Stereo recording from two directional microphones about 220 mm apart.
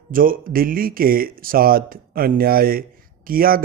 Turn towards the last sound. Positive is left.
turn(degrees=-40)  # may be behind; listen again after turning